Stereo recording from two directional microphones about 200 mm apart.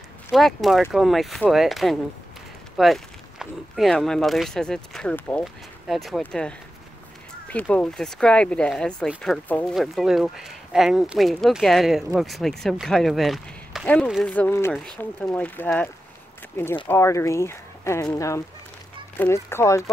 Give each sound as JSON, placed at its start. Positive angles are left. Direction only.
{"t": 0.3, "sound": "speech", "side_deg": 0}